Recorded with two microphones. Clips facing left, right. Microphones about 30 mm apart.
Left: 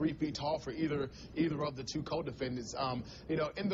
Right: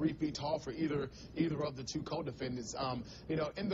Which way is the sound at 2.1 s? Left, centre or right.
Centre.